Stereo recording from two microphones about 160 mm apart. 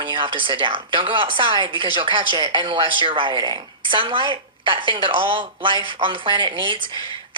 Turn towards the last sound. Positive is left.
turn(degrees=-30)  # may be behind; listen again after turning